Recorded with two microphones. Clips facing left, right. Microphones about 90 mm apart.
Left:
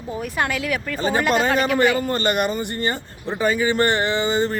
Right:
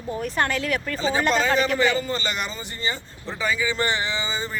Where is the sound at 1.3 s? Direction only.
55° left (ahead or behind).